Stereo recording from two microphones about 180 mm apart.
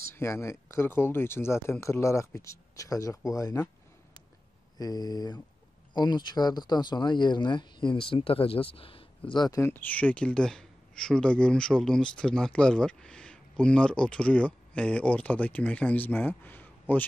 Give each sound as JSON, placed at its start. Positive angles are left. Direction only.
{"t": 0.1, "sound": "speech", "side_deg": 15}
{"t": 4.7, "sound": "speech", "side_deg": 20}